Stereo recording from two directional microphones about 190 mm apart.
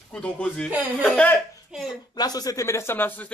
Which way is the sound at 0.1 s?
5° left (ahead or behind).